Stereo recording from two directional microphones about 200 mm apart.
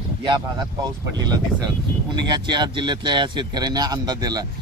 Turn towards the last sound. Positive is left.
turn(degrees=-20)  # may be behind; listen again after turning